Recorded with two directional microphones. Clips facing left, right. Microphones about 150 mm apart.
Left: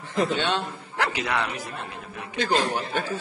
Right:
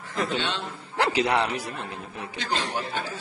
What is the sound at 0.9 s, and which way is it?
Speech, 30° right (ahead or behind).